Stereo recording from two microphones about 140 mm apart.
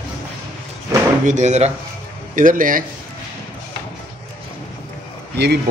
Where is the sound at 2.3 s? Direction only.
70° right (ahead or behind).